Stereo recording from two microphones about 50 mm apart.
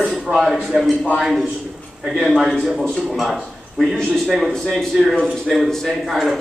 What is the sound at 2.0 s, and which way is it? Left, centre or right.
A man's voice, centre.